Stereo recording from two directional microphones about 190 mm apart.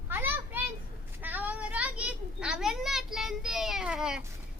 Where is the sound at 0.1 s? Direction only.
10° right (ahead or behind).